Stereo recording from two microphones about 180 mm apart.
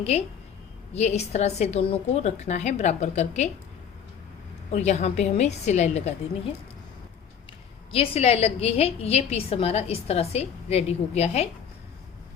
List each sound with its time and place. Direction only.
0.0 s a woman's voice: 35° left (ahead or behind)
4.7 s a woman's voice: 40° left (ahead or behind)
7.9 s a woman's voice: 35° left (ahead or behind)